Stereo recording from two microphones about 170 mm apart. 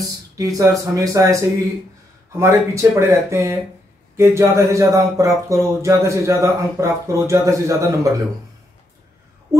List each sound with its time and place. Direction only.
0.4 s speech: 20° right (ahead or behind)